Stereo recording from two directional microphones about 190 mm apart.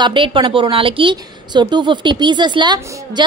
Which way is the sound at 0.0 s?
25° right (ahead or behind).